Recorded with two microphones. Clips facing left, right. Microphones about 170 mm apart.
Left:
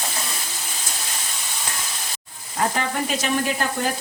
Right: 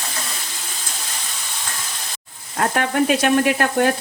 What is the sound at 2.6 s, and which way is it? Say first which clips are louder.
Frying: right 5 dB; 60° right (ahead or behind).